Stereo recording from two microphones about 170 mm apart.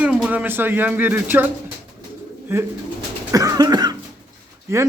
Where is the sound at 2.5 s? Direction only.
15° right (ahead or behind).